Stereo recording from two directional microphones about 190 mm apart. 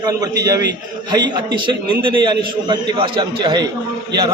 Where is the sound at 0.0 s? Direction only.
20° right (ahead or behind).